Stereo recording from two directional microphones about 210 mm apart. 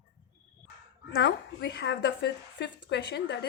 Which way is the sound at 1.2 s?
55° left (ahead or behind).